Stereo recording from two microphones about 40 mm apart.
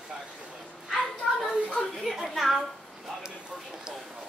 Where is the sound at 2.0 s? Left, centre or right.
Centre.